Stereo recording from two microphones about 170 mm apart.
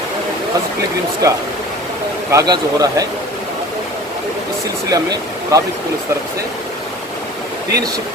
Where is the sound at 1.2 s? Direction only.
20° right (ahead or behind).